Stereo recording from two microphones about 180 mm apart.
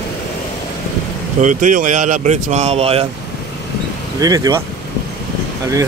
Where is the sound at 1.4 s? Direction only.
45° right (ahead or behind).